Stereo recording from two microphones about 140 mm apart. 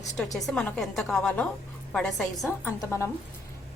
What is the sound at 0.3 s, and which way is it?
A woman's voice, centre (ahead or behind).